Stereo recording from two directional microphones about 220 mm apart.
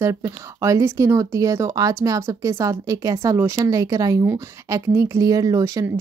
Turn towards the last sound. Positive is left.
turn(degrees=-15)  # may be behind; listen again after turning